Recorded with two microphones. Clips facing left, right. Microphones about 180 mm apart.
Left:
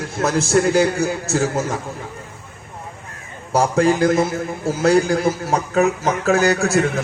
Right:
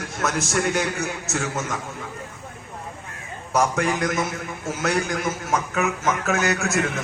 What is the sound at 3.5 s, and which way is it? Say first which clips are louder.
A man's voice: left 6 dB; 30° left (ahead or behind).